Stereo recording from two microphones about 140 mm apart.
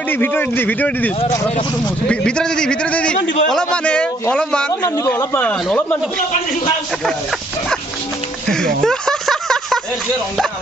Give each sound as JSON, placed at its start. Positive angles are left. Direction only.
{"t": 0.1, "sound": "a man's voice", "side_deg": 15}
{"t": 4.8, "sound": "speech", "side_deg": 20}
{"t": 5.4, "sound": "a man's voice", "side_deg": 10}
{"t": 8.5, "sound": "a sound", "side_deg": 5}